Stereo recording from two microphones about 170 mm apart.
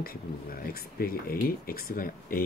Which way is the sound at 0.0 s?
60° left (ahead or behind).